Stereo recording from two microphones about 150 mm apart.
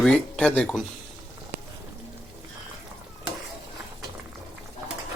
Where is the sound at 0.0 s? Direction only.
5° left (ahead or behind).